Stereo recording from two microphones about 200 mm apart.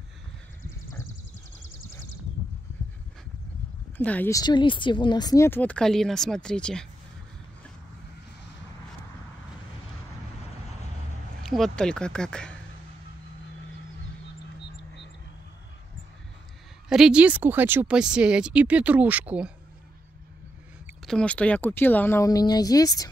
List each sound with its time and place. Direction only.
1.6 s horse: 75° left (ahead or behind)
4.0 s speech: 10° left (ahead or behind)
11.4 s speech: centre (ahead or behind)
16.9 s speech: 5° right (ahead or behind)
21.1 s speech: 5° left (ahead or behind)